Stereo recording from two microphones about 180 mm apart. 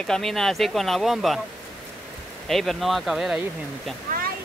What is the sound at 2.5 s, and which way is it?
Speech, centre (ahead or behind).